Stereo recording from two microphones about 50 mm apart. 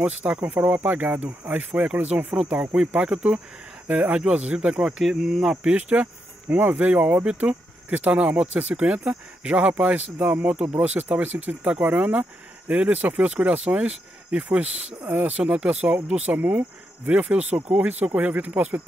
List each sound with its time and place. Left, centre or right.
0.3 s speech: right
3.9 s speech: right
4.3 s speech: right
5.0 s speech: centre
5.6 s speech: right